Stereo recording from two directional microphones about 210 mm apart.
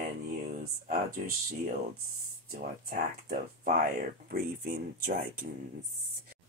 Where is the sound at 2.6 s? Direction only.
40° right (ahead or behind).